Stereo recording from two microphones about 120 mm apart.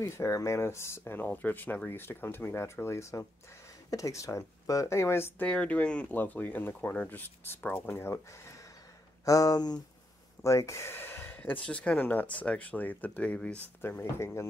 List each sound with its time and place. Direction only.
0.0 s speech: 25° left (ahead or behind)